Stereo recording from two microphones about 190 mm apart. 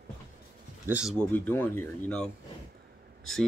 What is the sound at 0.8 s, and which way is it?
Speech, 5° right (ahead or behind).